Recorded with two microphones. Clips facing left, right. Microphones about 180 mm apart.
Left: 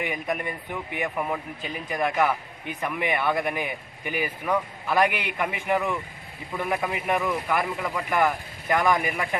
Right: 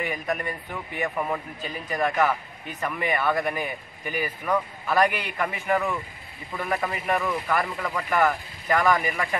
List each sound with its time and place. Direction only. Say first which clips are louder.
0.0 s speech: even; 15° left (ahead or behind)